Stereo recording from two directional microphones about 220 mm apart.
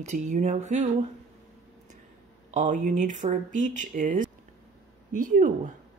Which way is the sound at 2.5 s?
35° right (ahead or behind).